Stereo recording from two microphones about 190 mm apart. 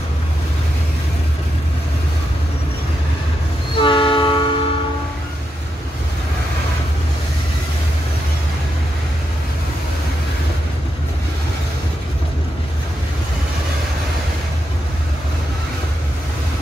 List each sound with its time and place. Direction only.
3.7 s train: 25° left (ahead or behind)